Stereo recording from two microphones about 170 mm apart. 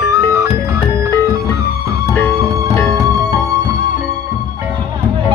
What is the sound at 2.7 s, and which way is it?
Music, 15° left (ahead or behind).